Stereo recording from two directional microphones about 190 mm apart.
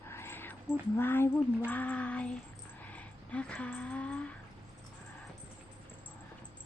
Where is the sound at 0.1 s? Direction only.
10° left (ahead or behind).